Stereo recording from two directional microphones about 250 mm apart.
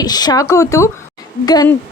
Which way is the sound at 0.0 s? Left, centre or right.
Centre.